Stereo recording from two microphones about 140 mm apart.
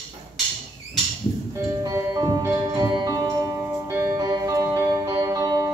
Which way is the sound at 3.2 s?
20° right (ahead or behind).